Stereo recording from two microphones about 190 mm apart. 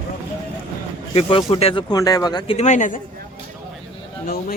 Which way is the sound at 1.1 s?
30° left (ahead or behind).